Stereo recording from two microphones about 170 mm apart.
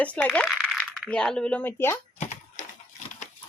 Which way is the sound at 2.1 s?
45° left (ahead or behind).